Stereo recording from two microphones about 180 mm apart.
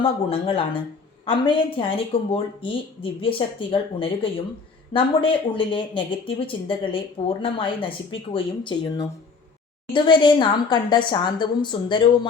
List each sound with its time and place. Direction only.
0.0 s a woman's voice: 30° left (ahead or behind)